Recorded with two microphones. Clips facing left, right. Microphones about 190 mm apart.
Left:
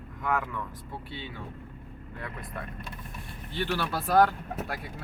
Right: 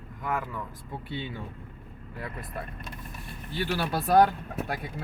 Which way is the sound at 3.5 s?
10° right (ahead or behind).